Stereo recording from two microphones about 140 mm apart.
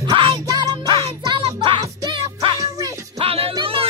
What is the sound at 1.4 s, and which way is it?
Music, 40° right (ahead or behind).